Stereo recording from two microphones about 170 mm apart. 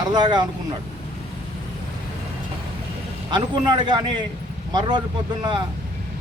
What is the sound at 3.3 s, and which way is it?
Speech, 25° right (ahead or behind).